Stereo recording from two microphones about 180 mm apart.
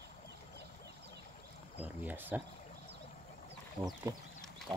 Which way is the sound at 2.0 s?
10° right (ahead or behind).